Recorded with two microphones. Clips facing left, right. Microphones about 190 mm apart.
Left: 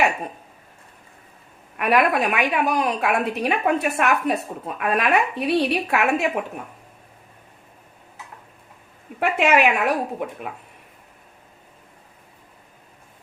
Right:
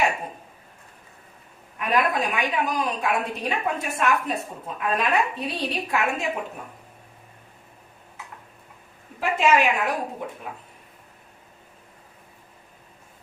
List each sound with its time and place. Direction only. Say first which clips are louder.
1.7 s a woman's voice: left 4 dB; 70° left (ahead or behind)
9.4 s a woman's voice: left 2 dB; 65° left (ahead or behind)